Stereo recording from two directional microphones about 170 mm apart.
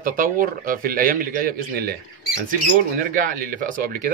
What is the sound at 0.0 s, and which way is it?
A man's voice, 55° right (ahead or behind).